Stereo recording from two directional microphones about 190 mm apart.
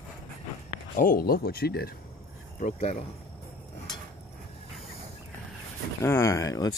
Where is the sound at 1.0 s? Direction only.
50° left (ahead or behind).